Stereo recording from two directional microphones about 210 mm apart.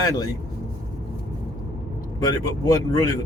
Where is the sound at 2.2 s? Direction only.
15° left (ahead or behind).